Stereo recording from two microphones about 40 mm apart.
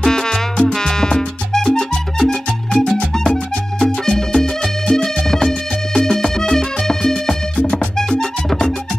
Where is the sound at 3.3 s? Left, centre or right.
Left.